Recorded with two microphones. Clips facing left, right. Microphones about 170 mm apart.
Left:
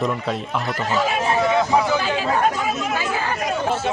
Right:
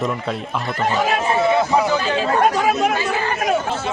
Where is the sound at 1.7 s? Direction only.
10° left (ahead or behind).